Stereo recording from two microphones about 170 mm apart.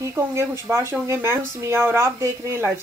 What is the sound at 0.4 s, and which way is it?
A woman's voice, 15° right (ahead or behind).